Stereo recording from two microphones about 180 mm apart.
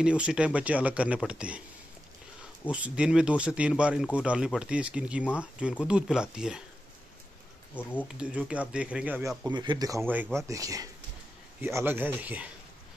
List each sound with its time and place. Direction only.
0.0 s speech: 5° right (ahead or behind)
2.7 s speech: 5° right (ahead or behind)
7.7 s speech: 10° left (ahead or behind)
8.1 s speech: 5° right (ahead or behind)
9.5 s speech: 25° right (ahead or behind); by 12.4 s 10° right (ahead or behind)